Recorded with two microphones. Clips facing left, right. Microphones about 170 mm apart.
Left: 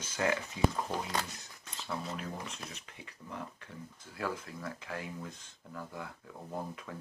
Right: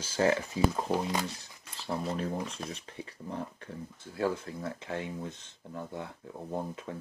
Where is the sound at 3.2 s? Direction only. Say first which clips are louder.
Right 5 dB; 35° right (ahead or behind).